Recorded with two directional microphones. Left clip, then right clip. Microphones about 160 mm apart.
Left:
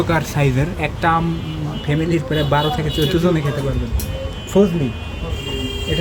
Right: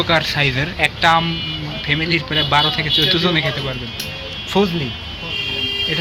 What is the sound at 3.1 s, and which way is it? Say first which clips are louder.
Speech: right 2 dB; 20° left (ahead or behind).